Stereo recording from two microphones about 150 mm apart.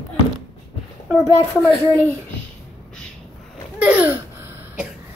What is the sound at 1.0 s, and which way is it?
Speech, 15° right (ahead or behind).